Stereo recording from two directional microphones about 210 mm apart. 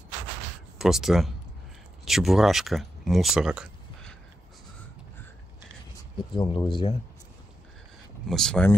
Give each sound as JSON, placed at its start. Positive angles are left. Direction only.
{"t": 0.7, "sound": "speech", "side_deg": 0}
{"t": 6.3, "sound": "speech", "side_deg": 20}
{"t": 8.3, "sound": "speech", "side_deg": 5}